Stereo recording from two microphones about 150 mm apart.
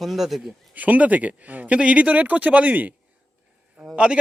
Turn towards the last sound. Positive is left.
turn(degrees=-5)  # may be behind; listen again after turning